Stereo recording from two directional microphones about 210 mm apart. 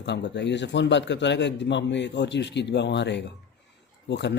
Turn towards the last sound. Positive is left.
turn(degrees=55)  # may be behind; listen again after turning